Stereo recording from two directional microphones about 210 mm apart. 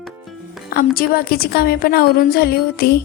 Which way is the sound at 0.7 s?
45° left (ahead or behind).